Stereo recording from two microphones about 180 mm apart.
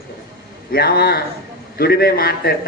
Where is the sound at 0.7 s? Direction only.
60° left (ahead or behind).